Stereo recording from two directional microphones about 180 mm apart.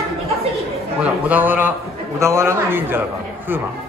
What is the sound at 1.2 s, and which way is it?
A man's voice, 10° right (ahead or behind).